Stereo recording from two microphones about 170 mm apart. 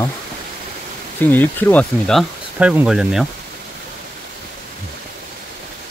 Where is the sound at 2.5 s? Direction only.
10° right (ahead or behind).